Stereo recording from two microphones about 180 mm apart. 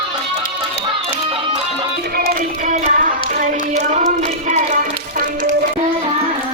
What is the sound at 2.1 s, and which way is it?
Music, 55° right (ahead or behind).